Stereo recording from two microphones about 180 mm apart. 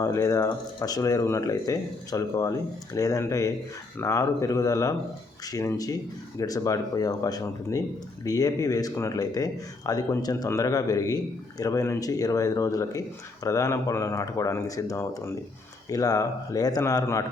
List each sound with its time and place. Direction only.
0.0 s speech: 20° left (ahead or behind)